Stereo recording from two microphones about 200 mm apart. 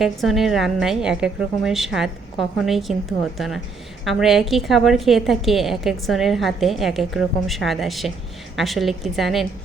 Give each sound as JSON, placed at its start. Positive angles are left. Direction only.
{"t": 0.0, "sound": "a woman's voice", "side_deg": 0}